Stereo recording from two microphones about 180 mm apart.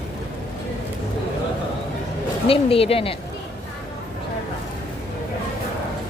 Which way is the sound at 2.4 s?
30° left (ahead or behind).